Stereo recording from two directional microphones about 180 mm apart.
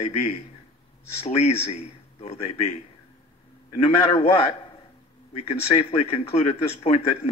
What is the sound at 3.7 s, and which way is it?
Speech, 35° left (ahead or behind).